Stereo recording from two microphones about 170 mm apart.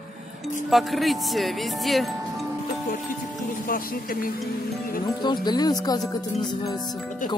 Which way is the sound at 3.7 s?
55° left (ahead or behind).